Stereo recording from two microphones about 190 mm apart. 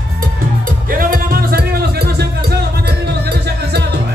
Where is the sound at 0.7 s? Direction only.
50° right (ahead or behind).